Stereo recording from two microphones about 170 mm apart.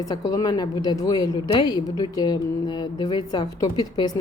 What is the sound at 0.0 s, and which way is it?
A woman's voice, 20° left (ahead or behind).